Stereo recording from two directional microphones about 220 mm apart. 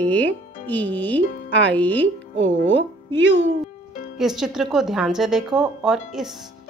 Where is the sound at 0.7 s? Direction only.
10° left (ahead or behind).